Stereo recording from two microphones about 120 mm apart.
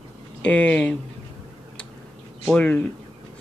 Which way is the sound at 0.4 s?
10° left (ahead or behind).